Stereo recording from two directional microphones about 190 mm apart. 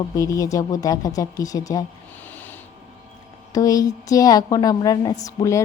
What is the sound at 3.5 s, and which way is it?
A woman's voice, 20° left (ahead or behind).